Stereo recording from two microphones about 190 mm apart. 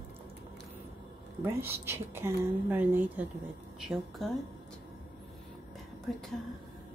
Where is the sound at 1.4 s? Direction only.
10° right (ahead or behind).